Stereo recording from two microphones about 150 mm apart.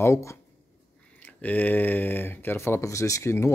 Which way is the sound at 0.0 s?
20° left (ahead or behind).